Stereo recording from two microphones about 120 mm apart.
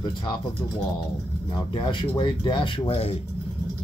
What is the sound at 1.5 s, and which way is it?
Speech, 45° left (ahead or behind).